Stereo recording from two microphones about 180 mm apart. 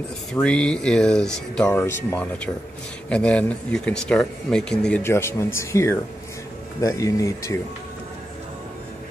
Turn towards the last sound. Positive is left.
turn(degrees=15)  # may be behind; listen again after turning